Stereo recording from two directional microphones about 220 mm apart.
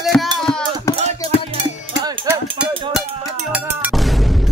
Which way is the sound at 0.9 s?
10° left (ahead or behind).